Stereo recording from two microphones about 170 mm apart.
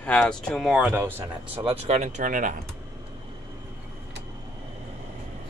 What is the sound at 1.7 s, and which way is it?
Speech, 40° right (ahead or behind).